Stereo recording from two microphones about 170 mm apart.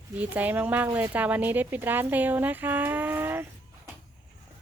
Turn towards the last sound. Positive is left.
turn(degrees=-10)  # may be behind; listen again after turning